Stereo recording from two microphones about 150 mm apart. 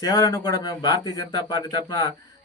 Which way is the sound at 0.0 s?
20° left (ahead or behind).